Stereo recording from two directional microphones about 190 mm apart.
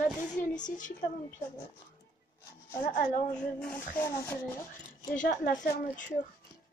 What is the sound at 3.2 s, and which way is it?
Speech, 5° left (ahead or behind).